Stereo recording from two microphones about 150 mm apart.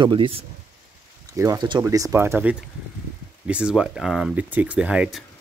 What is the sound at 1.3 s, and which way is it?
Speech, 20° right (ahead or behind).